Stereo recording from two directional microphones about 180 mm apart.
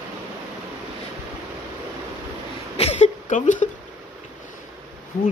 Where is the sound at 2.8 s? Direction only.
40° left (ahead or behind).